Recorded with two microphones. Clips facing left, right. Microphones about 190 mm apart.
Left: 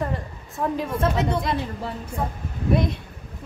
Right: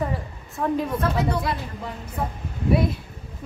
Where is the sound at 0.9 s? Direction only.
25° left (ahead or behind).